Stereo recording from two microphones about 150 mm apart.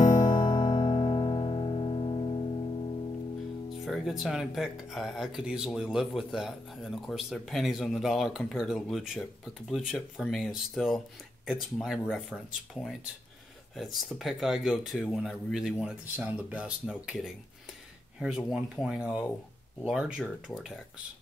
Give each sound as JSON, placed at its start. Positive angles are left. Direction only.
{"t": 0.2, "sound": "music", "side_deg": 30}
{"t": 3.8, "sound": "speech", "side_deg": 0}
{"t": 18.5, "sound": "speech", "side_deg": -5}